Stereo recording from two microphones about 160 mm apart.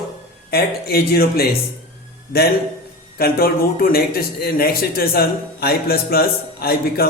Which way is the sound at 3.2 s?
70° left (ahead or behind).